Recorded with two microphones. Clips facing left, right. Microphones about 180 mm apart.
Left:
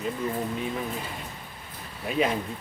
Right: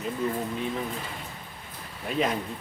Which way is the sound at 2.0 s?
5° left (ahead or behind).